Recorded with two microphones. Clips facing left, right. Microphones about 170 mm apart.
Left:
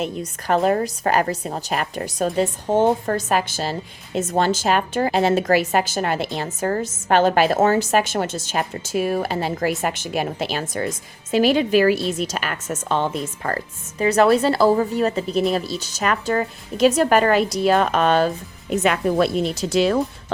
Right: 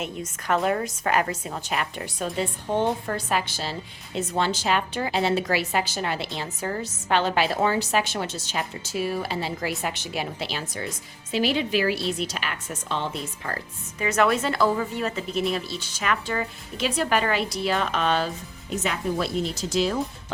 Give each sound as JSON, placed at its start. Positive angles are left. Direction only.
{"t": 0.0, "sound": "a woman's voice", "side_deg": 35}
{"t": 14.0, "sound": "speech", "side_deg": 35}
{"t": 18.7, "sound": "speech", "side_deg": 65}